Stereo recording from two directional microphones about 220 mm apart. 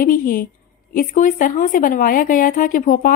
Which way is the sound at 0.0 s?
40° left (ahead or behind).